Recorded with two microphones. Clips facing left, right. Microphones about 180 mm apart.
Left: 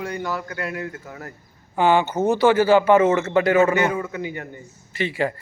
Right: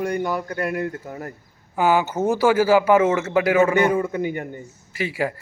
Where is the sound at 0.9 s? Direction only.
30° right (ahead or behind).